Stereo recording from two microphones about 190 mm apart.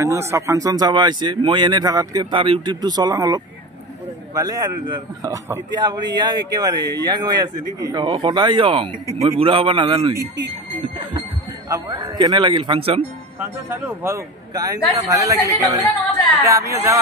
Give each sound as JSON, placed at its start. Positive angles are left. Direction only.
{"t": 0.0, "sound": "a man's voice", "side_deg": -15}
{"t": 11.7, "sound": "speech", "side_deg": -15}
{"t": 13.4, "sound": "speech", "side_deg": -10}